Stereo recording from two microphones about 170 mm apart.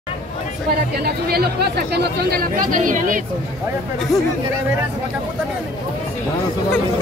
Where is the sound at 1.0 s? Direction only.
65° right (ahead or behind); by 3.3 s 50° right (ahead or behind).